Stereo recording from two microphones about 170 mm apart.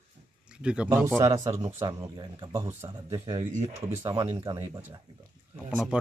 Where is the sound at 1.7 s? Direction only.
20° right (ahead or behind).